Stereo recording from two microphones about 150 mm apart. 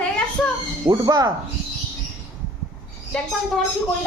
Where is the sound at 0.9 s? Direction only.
25° right (ahead or behind).